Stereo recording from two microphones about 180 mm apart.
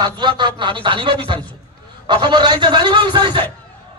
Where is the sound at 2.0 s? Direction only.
25° right (ahead or behind).